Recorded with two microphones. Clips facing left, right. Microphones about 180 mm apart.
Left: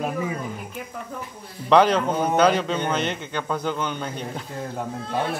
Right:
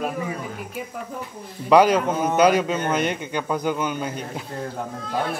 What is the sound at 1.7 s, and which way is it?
A man's voice, 10° right (ahead or behind).